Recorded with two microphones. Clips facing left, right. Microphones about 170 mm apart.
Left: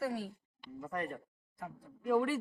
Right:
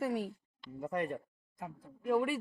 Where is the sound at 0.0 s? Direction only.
20° right (ahead or behind).